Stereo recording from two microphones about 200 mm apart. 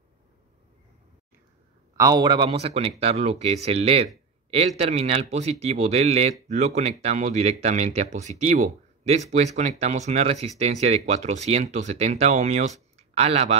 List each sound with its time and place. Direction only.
2.0 s speech: 20° right (ahead or behind)